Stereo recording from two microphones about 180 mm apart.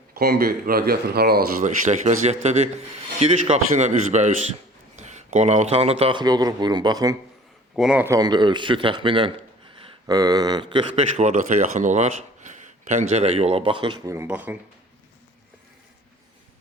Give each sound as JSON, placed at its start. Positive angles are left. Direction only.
{"t": 0.1, "sound": "speech", "side_deg": -60}
{"t": 1.9, "sound": "speech", "side_deg": -40}
{"t": 7.8, "sound": "a man's voice", "side_deg": -5}
{"t": 8.0, "sound": "speech", "side_deg": -20}
{"t": 11.8, "sound": "speech", "side_deg": -40}
{"t": 14.2, "sound": "speech", "side_deg": -10}